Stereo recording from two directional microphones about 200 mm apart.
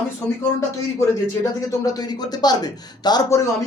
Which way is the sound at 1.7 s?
20° left (ahead or behind).